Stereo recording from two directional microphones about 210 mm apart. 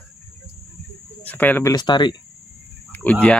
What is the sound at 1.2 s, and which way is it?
Speech, 10° left (ahead or behind).